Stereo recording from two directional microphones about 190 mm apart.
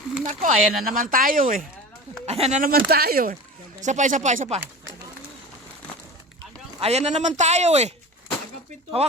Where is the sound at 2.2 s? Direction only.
35° right (ahead or behind); by 3.3 s 50° right (ahead or behind).